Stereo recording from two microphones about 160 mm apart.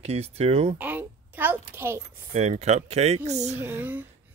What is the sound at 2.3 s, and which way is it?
Speech, 45° right (ahead or behind).